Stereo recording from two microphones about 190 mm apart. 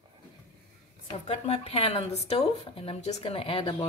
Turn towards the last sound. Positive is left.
turn(degrees=30)  # may be behind; listen again after turning